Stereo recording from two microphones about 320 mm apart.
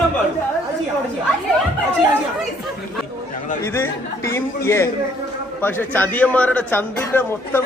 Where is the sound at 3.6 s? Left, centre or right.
Centre.